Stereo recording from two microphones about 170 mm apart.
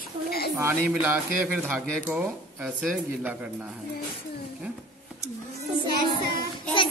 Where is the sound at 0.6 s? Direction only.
10° right (ahead or behind).